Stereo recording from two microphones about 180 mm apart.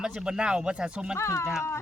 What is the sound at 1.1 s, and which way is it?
Speech, 15° left (ahead or behind).